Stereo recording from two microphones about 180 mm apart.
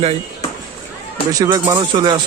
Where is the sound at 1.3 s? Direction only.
20° right (ahead or behind).